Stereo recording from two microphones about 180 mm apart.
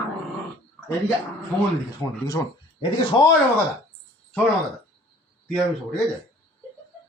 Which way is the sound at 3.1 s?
25° left (ahead or behind).